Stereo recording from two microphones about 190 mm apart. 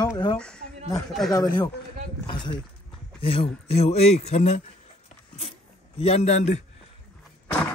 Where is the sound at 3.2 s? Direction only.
30° left (ahead or behind).